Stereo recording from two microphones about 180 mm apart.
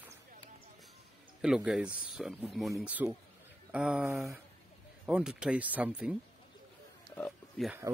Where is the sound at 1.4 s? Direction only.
5° right (ahead or behind).